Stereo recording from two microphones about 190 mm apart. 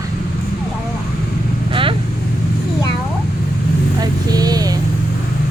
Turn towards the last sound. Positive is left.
turn(degrees=-20)  # may be behind; listen again after turning